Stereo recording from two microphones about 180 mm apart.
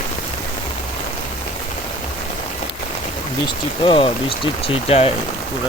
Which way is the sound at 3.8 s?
30° left (ahead or behind).